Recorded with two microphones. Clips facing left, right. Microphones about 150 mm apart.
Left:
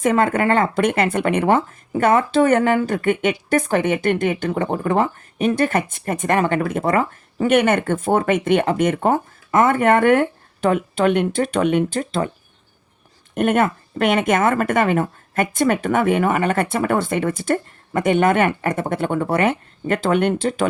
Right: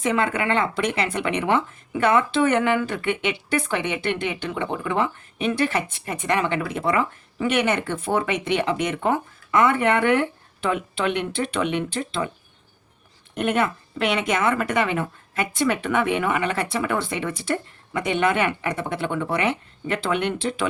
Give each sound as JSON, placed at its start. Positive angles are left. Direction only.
{"t": 0.0, "sound": "speech", "side_deg": 45}
{"t": 13.3, "sound": "speech", "side_deg": 50}